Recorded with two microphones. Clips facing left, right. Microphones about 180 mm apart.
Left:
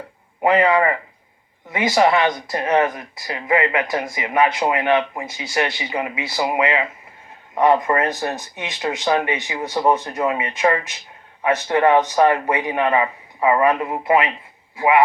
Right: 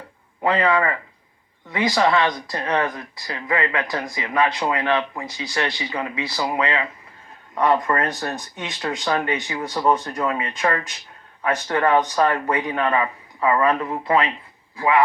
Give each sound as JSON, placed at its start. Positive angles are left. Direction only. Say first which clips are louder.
{"t": 0.4, "sound": "speech", "louder": "left 4 dB", "side_deg": 20}